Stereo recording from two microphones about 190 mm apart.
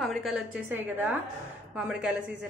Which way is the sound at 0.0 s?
Centre (ahead or behind).